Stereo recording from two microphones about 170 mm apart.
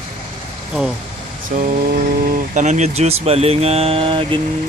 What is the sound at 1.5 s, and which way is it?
Speech, 50° right (ahead or behind).